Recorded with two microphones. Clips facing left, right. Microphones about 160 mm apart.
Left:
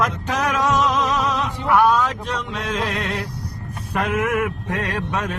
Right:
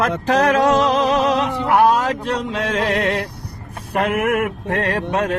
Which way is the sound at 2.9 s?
70° right (ahead or behind).